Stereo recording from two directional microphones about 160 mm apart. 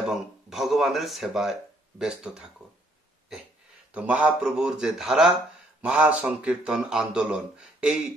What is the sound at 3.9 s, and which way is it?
A man's voice, 10° right (ahead or behind).